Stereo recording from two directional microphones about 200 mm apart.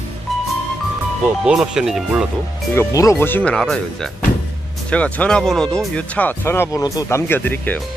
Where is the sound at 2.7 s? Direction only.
15° left (ahead or behind).